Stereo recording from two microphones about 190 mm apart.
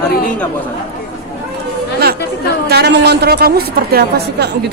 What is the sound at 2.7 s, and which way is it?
A woman's voice, 60° right (ahead or behind).